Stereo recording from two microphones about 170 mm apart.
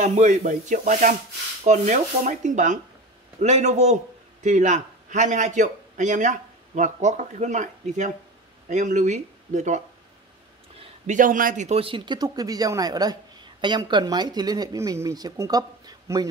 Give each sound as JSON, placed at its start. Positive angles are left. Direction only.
{"t": 0.0, "sound": "a man's voice", "side_deg": -40}
{"t": 11.1, "sound": "speech", "side_deg": -50}